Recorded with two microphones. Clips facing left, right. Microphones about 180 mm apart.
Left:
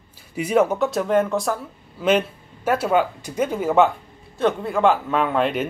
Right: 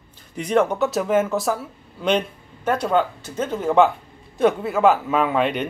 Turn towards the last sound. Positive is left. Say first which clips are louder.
# even
turn(degrees=0)  # may be behind; listen again after turning